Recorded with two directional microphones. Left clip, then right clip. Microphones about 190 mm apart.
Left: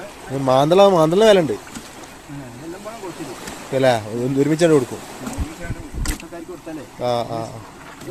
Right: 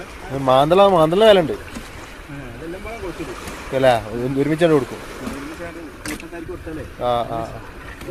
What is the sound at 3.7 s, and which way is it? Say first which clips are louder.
Speech: right 1 dB; 25° left (ahead or behind).